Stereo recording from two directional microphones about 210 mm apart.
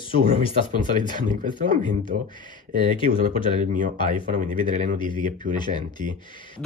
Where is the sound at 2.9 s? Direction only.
25° left (ahead or behind).